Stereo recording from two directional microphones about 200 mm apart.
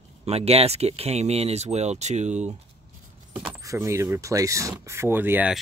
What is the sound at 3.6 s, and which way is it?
Speech, 15° right (ahead or behind).